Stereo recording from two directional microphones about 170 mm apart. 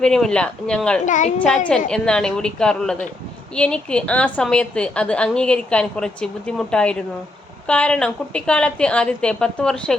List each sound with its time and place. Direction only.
0.0 s a woman's voice: 5° left (ahead or behind)
1.0 s a child's voice: 50° left (ahead or behind)
1.9 s a woman's voice: 5° left (ahead or behind)